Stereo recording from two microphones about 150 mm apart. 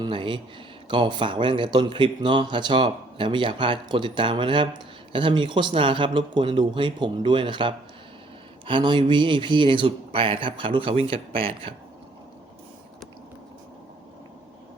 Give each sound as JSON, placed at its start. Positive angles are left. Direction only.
{"t": 0.0, "sound": "a man's voice", "side_deg": -35}